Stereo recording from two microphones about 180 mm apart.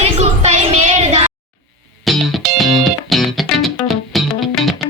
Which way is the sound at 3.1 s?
Centre (ahead or behind).